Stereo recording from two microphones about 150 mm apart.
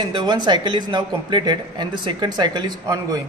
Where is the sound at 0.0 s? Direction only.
30° right (ahead or behind).